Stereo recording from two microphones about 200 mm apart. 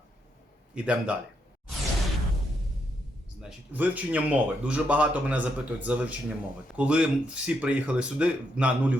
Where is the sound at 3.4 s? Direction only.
5° right (ahead or behind).